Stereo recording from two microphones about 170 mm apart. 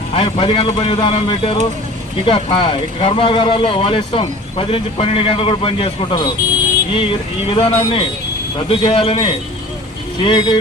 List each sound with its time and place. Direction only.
0.1 s speech: 30° left (ahead or behind)